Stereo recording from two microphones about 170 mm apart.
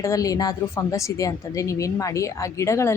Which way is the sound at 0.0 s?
20° left (ahead or behind).